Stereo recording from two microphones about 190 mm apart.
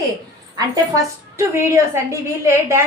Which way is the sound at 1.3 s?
15° right (ahead or behind).